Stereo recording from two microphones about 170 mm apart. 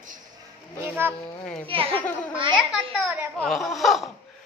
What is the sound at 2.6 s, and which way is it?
A child's voice, 5° right (ahead or behind).